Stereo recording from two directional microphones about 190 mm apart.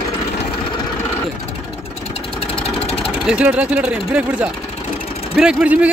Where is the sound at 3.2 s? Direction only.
10° right (ahead or behind).